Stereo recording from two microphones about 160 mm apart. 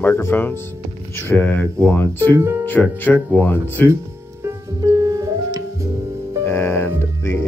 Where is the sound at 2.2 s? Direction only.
15° right (ahead or behind).